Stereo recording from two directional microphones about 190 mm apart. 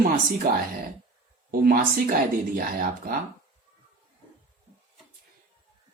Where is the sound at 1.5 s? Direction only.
50° right (ahead or behind).